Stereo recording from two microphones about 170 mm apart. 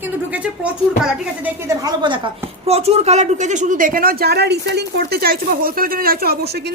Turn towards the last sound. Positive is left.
turn(degrees=-60)  # may be behind; listen again after turning